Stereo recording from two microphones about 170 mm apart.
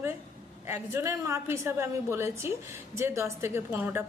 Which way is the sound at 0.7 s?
15° right (ahead or behind).